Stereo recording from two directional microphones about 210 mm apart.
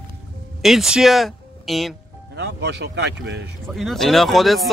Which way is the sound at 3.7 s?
Centre (ahead or behind).